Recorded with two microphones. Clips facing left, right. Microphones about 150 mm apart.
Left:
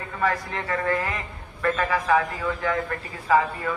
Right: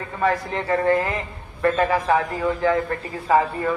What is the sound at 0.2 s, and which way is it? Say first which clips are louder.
A man's voice: right 4 dB; 25° right (ahead or behind).